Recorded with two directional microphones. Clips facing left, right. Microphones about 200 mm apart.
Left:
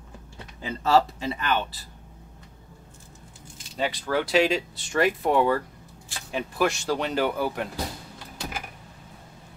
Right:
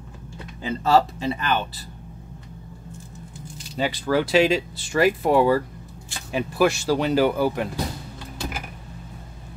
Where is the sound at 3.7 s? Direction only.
Centre (ahead or behind).